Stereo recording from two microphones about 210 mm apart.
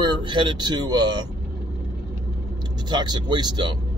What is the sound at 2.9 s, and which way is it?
Speech, 20° right (ahead or behind).